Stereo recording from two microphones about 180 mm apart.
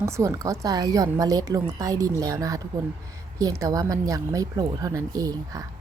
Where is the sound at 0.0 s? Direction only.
15° right (ahead or behind).